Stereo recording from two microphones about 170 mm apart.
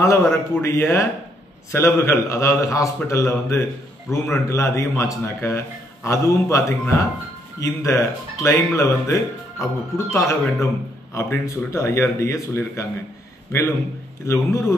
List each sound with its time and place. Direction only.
0.0 s speech: 15° left (ahead or behind)
7.6 s speech: 15° left (ahead or behind)
14.2 s speech: 15° left (ahead or behind)